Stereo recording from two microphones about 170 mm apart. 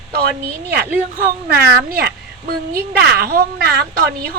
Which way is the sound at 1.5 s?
65° right (ahead or behind).